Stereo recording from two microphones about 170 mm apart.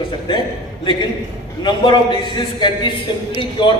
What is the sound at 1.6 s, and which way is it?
A man's voice, 30° left (ahead or behind).